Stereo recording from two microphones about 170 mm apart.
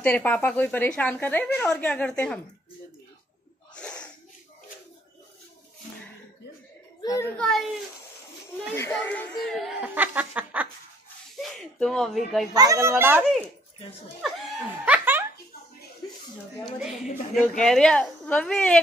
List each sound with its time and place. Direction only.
0.0 s a woman's voice: 10° left (ahead or behind)
3.7 s a sound: 5° left (ahead or behind)
7.1 s a woman's voice: 15° left (ahead or behind)
8.7 s a woman's voice: 10° left (ahead or behind); by 10.7 s 10° right (ahead or behind)
11.4 s a woman's voice: centre (ahead or behind)
12.5 s speech: 20° right (ahead or behind)
14.9 s giggle: 10° right (ahead or behind)
16.6 s a woman's voice: centre (ahead or behind)